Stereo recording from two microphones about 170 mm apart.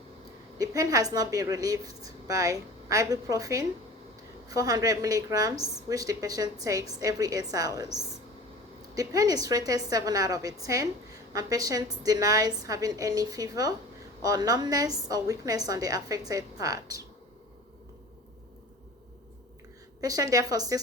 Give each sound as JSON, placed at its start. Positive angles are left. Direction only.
{"t": 0.6, "sound": "a woman's voice", "side_deg": -20}
{"t": 20.0, "sound": "a woman's voice", "side_deg": -20}